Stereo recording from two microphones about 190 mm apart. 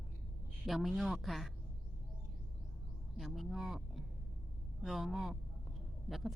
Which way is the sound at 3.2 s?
Centre (ahead or behind).